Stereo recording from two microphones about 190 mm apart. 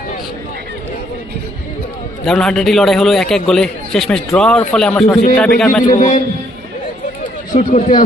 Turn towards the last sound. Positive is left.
turn(degrees=40)  # may be behind; listen again after turning